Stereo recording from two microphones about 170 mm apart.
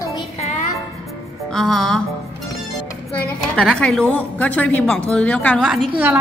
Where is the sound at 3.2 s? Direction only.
5° left (ahead or behind).